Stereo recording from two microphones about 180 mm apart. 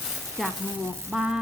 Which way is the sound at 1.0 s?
5° right (ahead or behind).